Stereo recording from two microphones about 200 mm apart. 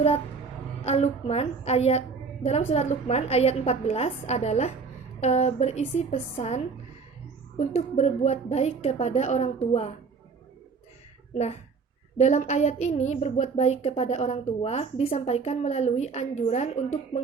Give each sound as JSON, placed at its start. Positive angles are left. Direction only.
{"t": 0.9, "sound": "a woman's voice", "side_deg": 30}
{"t": 7.7, "sound": "a woman's voice", "side_deg": 35}
{"t": 12.1, "sound": "a woman's voice", "side_deg": 35}